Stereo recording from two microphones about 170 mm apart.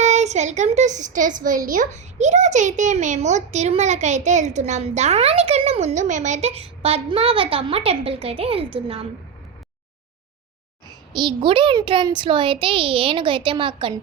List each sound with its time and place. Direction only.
0.0 s a child's voice: 40° right (ahead or behind)
10.8 s a sound: 25° right (ahead or behind)
11.3 s a child's voice: 30° right (ahead or behind)